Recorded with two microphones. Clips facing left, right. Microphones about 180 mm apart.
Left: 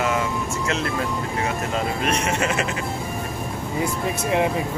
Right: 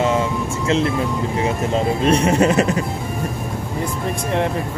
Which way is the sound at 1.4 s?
30° right (ahead or behind).